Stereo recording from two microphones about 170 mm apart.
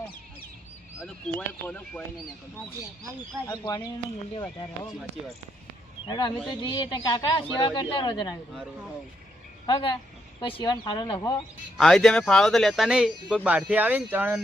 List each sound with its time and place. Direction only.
0.9 s speech: 5° left (ahead or behind)
3.5 s a woman's voice: 25° left (ahead or behind)
6.1 s a woman's voice: 25° left (ahead or behind)
9.6 s a woman's voice: 30° left (ahead or behind)
11.8 s speech: 5° left (ahead or behind)